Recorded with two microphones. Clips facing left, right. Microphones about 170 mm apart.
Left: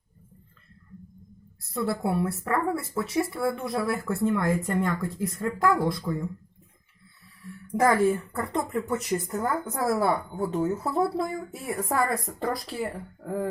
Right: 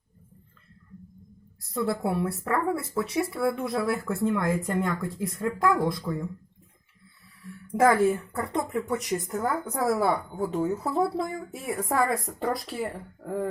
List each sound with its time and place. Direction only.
1.7 s speech: centre (ahead or behind)
7.7 s a woman's voice: centre (ahead or behind)
11.3 s speech: 20° right (ahead or behind)
11.7 s speech: centre (ahead or behind)